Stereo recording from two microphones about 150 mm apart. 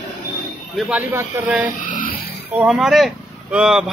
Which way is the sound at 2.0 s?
80° left.